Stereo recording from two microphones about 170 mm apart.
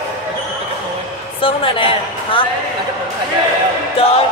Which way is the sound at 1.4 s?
30° left (ahead or behind).